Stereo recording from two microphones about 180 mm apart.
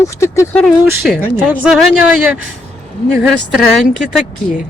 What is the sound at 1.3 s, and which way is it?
Speech, 10° right (ahead or behind).